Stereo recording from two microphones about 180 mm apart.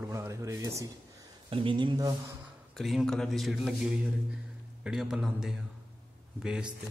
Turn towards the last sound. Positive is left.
turn(degrees=-5)  # may be behind; listen again after turning